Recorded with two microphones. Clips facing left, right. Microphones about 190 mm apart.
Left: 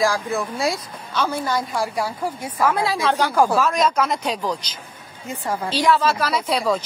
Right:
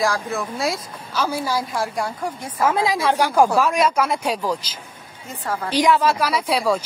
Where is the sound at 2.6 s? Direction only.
20° right (ahead or behind).